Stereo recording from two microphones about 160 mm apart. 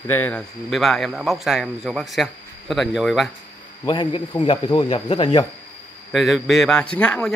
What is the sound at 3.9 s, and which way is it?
Speech, 30° left (ahead or behind).